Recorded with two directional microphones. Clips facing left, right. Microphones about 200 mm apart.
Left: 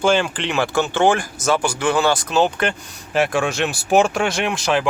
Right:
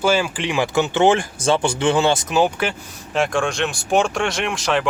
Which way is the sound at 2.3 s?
10° right (ahead or behind).